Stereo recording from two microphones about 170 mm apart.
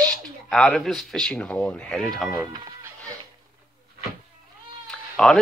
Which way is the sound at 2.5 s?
25° right (ahead or behind).